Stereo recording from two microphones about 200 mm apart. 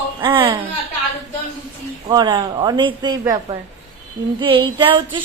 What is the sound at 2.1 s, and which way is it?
A woman's voice, 20° right (ahead or behind).